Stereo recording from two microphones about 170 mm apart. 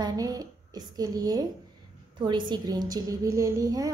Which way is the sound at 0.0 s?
20° right (ahead or behind).